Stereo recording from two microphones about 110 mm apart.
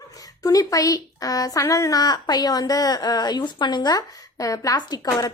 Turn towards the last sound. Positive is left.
turn(degrees=40)  # may be behind; listen again after turning